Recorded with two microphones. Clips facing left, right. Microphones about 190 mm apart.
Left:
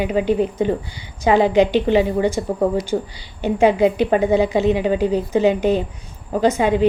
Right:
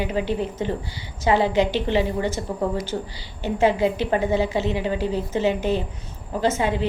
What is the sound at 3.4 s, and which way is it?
A woman's voice, 15° left (ahead or behind).